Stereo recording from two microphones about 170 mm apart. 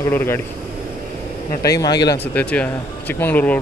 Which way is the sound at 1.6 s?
20° left (ahead or behind).